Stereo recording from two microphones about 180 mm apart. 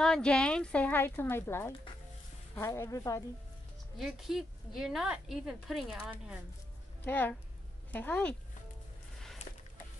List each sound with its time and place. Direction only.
0.0 s a woman's voice: 5° left (ahead or behind)
4.0 s a woman's voice: centre (ahead or behind)
7.1 s a woman's voice: 10° left (ahead or behind)